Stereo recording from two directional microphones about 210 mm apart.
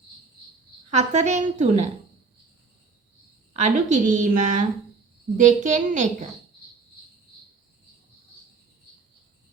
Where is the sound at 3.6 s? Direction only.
35° right (ahead or behind).